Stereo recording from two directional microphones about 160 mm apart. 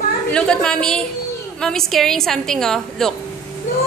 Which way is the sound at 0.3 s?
5° left (ahead or behind).